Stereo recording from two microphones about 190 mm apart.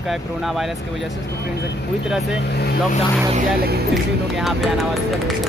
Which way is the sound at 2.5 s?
55° left (ahead or behind).